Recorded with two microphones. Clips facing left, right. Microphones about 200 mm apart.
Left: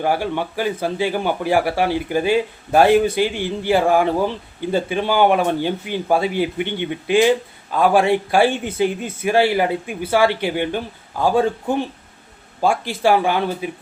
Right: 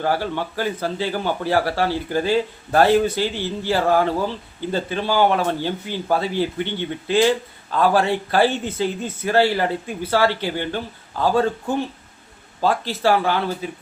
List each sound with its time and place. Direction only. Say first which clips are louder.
0.0 s a man's voice: left 2 dB; 15° left (ahead or behind)